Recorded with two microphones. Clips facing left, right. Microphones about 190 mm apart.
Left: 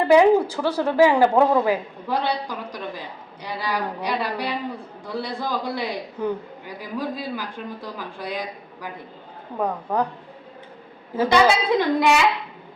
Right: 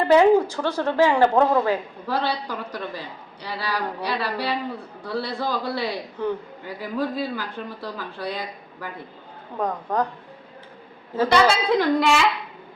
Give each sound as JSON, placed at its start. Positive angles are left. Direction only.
{"t": 0.1, "sound": "a man's voice", "side_deg": 10}
{"t": 11.1, "sound": "a man's voice", "side_deg": 15}